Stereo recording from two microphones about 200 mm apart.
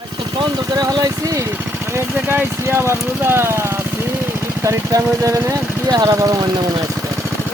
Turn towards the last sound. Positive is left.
turn(degrees=-20)  # may be behind; listen again after turning